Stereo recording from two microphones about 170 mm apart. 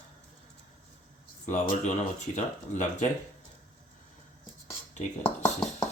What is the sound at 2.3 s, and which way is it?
Speech, 45° left (ahead or behind).